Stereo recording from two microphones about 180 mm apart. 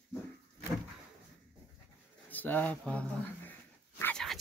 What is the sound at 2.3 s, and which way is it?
Speech, 10° left (ahead or behind).